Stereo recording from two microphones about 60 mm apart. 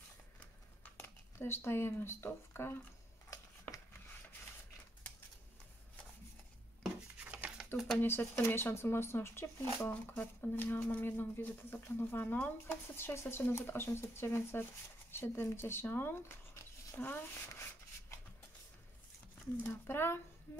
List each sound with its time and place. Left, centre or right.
0.9 s speech: left
7.2 s a sound: right
7.7 s speech: centre
8.0 s speech: left
19.7 s speech: left